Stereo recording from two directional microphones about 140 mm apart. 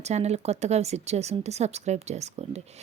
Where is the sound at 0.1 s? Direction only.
50° right (ahead or behind).